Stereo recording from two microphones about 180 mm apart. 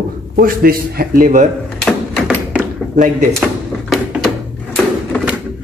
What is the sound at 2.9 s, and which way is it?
Speech, 45° right (ahead or behind).